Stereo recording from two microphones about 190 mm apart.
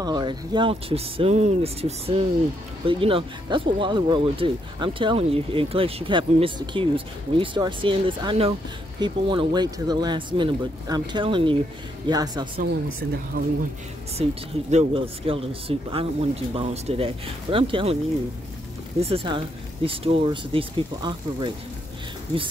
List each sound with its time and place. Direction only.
0.0 s speech: 25° right (ahead or behind)
13.4 s speech: 50° right (ahead or behind)
14.2 s speech: 35° right (ahead or behind)
18.9 s speech: 30° right (ahead or behind)